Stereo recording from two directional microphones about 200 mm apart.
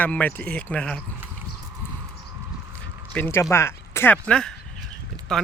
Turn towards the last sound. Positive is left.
turn(degrees=5)  # may be behind; listen again after turning